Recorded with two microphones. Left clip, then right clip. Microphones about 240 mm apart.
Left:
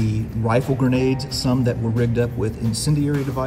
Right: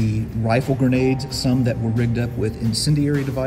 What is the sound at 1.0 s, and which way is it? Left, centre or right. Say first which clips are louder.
Speech: right 1 dB; left.